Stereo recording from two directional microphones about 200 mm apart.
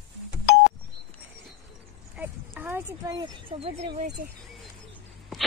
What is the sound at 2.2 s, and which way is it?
Speech, 10° right (ahead or behind).